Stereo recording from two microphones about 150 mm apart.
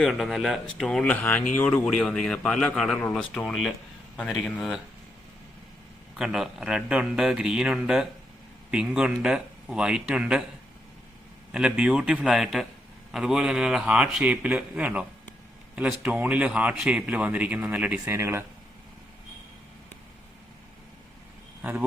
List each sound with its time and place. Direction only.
0.0 s a man's voice: centre (ahead or behind)
6.1 s a man's voice: 5° right (ahead or behind)
11.5 s a man's voice: 5° right (ahead or behind)
21.6 s speech: 10° right (ahead or behind)